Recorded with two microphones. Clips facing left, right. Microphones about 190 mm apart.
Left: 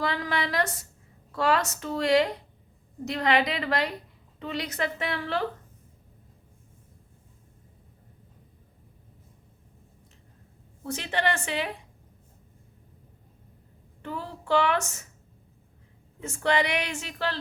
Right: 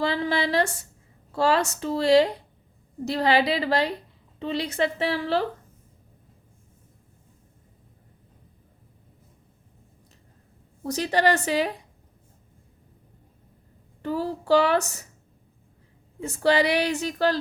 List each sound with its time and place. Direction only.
0.0 s a woman's voice: 30° right (ahead or behind)
10.8 s speech: 40° right (ahead or behind)
14.0 s speech: 35° right (ahead or behind)
16.2 s speech: 35° right (ahead or behind)